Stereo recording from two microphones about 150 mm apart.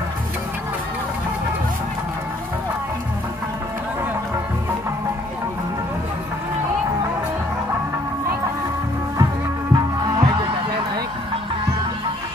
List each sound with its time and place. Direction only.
9.2 s music: 25° right (ahead or behind)